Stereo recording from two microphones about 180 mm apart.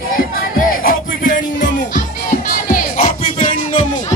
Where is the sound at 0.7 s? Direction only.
50° left (ahead or behind).